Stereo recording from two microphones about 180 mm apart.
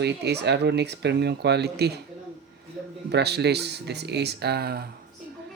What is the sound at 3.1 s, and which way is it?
Speech, 65° right (ahead or behind).